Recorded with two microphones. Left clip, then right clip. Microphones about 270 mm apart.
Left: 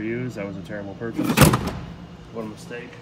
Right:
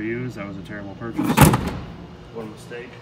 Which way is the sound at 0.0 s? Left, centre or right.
Centre.